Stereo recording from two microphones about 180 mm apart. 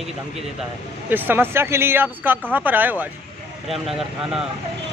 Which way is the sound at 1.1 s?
10° right (ahead or behind).